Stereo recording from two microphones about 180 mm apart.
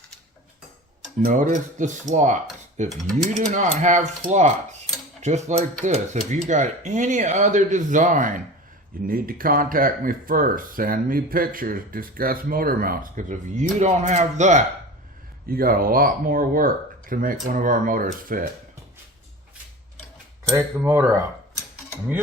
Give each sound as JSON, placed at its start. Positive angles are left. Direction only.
{"t": 1.2, "sound": "speech", "side_deg": -45}
{"t": 2.9, "sound": "mechanisms", "side_deg": 0}
{"t": 3.3, "sound": "speech", "side_deg": -45}
{"t": 15.4, "sound": "speech", "side_deg": -55}
{"t": 20.6, "sound": "speech", "side_deg": -10}